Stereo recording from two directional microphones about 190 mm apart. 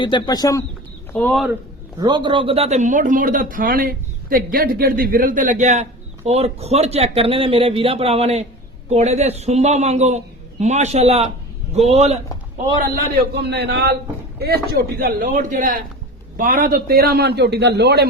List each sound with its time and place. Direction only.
0.0 s speech: 20° left (ahead or behind)
1.1 s speech: 5° left (ahead or behind)
2.0 s speech: 25° right (ahead or behind)
12.8 s a man's voice: 55° right (ahead or behind)